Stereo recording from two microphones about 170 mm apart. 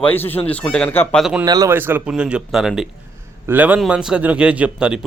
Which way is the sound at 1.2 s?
5° right (ahead or behind).